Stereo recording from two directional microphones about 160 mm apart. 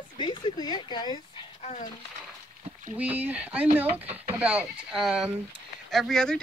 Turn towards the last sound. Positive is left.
turn(degrees=5)  # may be behind; listen again after turning